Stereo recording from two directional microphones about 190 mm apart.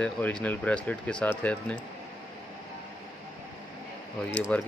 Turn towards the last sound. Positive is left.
turn(degrees=5)  # may be behind; listen again after turning